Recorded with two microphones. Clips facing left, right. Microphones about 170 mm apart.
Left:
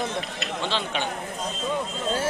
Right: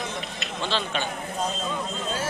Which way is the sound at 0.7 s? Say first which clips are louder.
Right 2 dB; 15° left (ahead or behind).